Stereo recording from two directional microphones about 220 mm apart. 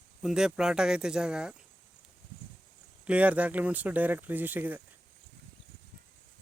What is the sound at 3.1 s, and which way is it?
Speech, 5° right (ahead or behind).